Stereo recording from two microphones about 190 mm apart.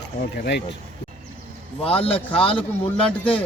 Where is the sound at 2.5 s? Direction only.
10° left (ahead or behind).